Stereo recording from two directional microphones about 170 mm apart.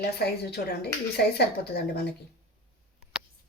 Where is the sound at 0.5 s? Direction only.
70° left (ahead or behind).